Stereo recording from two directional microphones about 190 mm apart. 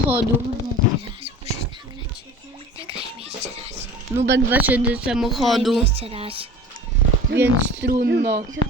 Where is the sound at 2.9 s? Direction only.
30° right (ahead or behind).